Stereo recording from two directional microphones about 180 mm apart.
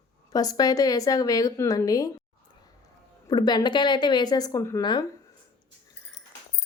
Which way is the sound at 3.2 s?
25° left (ahead or behind).